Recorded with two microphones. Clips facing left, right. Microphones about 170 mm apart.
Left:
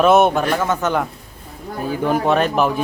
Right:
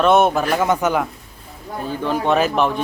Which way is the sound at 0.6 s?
15° right (ahead or behind).